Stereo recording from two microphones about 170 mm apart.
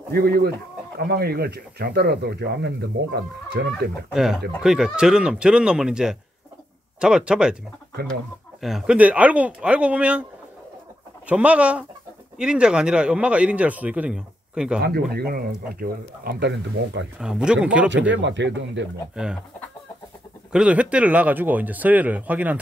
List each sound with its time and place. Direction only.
0.1 s speech: 65° right (ahead or behind)
4.1 s speech: 5° right (ahead or behind)
11.2 s speech: 5° right (ahead or behind)
14.8 s speech: 65° right (ahead or behind); by 17.0 s 90° right
17.2 s speech: 5° right (ahead or behind)
17.8 s speech: 90° right
20.5 s speech: 5° right (ahead or behind)